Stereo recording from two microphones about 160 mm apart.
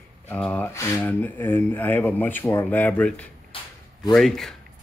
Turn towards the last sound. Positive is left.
turn(degrees=0)  # may be behind; listen again after turning